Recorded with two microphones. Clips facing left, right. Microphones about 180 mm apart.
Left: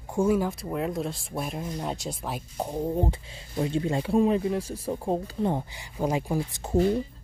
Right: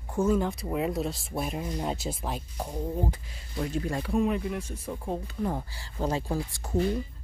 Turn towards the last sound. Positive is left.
turn(degrees=20)  # may be behind; listen again after turning